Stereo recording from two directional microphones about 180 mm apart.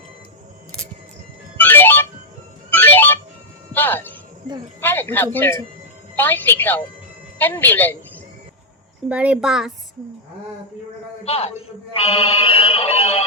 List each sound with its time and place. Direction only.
1.5 s music: 10° left (ahead or behind)
3.8 s a sound: 10° left (ahead or behind)
4.8 s a woman's voice: 10° left (ahead or behind)
9.0 s a child's voice: 5° right (ahead or behind)
11.2 s a man's voice: 35° left (ahead or behind)
11.9 s music: 30° left (ahead or behind)